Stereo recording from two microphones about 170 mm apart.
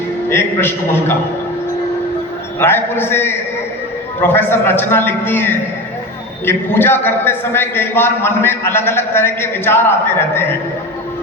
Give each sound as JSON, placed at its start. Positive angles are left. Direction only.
{"t": 0.3, "sound": "a man's voice", "side_deg": 15}
{"t": 2.6, "sound": "a man's voice", "side_deg": 15}